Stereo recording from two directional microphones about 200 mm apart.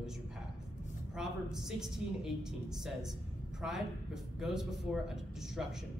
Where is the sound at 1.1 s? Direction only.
Centre (ahead or behind).